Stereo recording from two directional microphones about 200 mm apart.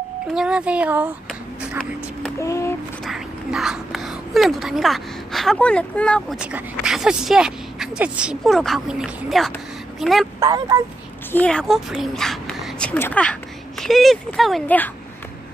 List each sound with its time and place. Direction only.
0.3 s speech: 5° right (ahead or behind)
2.4 s speech: 15° left (ahead or behind)
3.1 s a woman's voice: centre (ahead or behind)
10.4 s speech: 15° right (ahead or behind)
11.3 s speech: 5° left (ahead or behind)